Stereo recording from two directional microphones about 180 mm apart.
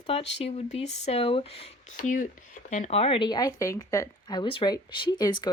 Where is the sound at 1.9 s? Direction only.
50° left (ahead or behind).